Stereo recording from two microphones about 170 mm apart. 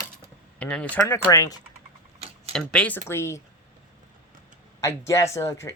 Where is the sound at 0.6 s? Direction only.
5° left (ahead or behind).